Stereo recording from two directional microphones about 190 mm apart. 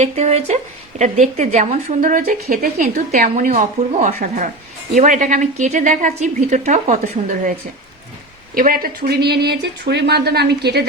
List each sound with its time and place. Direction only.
0.0 s speech: 35° right (ahead or behind)
8.5 s speech: 45° right (ahead or behind)